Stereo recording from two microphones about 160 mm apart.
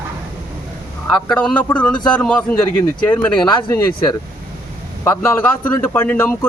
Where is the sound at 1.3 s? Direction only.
5° left (ahead or behind).